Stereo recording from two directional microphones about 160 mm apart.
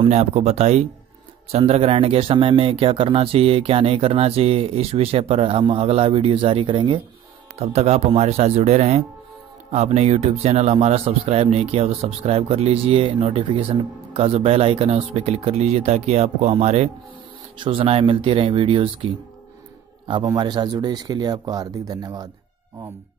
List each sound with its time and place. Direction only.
0.0 s speech: 45° right (ahead or behind)
7.5 s speech: 40° right (ahead or behind); by 22.3 s 25° right (ahead or behind)